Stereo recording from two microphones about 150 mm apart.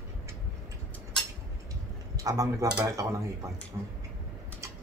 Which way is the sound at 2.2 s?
20° right (ahead or behind).